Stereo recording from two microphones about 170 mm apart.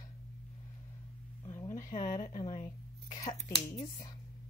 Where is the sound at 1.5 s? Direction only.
15° left (ahead or behind).